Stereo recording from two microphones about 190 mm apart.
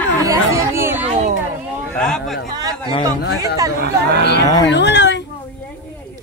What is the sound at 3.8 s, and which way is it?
Speech, 55° right (ahead or behind).